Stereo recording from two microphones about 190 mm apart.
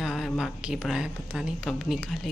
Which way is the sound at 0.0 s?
Centre (ahead or behind).